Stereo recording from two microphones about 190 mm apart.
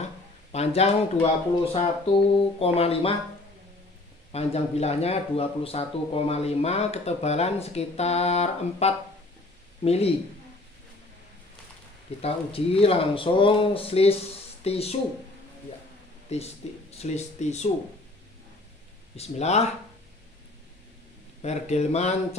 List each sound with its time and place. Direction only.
0.5 s speech: 35° left (ahead or behind)
4.3 s speech: 35° left (ahead or behind)
12.2 s speech: 30° left (ahead or behind)
16.3 s speech: 35° left (ahead or behind)
19.1 s speech: 35° left (ahead or behind)
21.4 s speech: 35° left (ahead or behind)